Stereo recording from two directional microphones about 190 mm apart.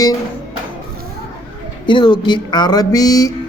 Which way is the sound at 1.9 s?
25° left (ahead or behind).